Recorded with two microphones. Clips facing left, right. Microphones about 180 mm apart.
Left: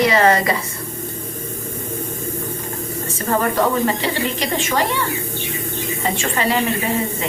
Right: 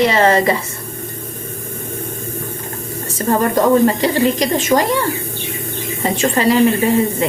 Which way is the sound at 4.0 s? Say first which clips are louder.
Right 7 dB; 40° right (ahead or behind).